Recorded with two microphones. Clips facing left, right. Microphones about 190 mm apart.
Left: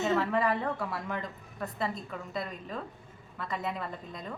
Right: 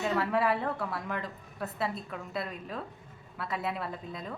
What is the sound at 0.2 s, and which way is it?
A woman's voice, 5° right (ahead or behind).